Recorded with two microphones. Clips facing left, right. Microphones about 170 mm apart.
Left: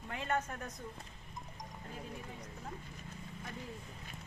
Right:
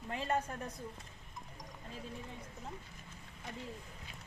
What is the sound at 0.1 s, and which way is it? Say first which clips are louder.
Speech: right 1 dB; 30° right (ahead or behind).